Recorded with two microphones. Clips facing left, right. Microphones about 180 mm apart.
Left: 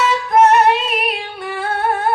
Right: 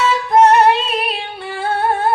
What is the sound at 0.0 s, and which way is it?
Music, 30° right (ahead or behind).